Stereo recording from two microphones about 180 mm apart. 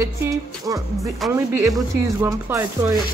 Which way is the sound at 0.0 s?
20° right (ahead or behind).